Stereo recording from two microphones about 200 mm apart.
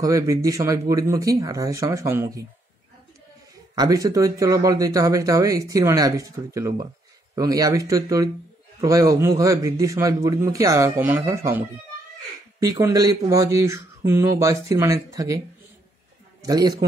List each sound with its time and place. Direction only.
0.0 s speech: 15° right (ahead or behind)
3.7 s speech: 20° right (ahead or behind)
16.4 s a man's voice: 20° right (ahead or behind)